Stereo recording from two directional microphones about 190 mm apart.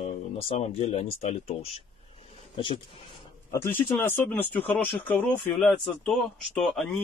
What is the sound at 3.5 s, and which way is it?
Speech, 10° left (ahead or behind).